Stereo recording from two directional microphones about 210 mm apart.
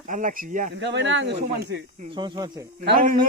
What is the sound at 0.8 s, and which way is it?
Speech, 60° right (ahead or behind).